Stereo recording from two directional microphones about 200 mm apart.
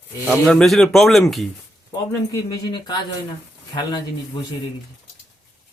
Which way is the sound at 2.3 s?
20° left (ahead or behind).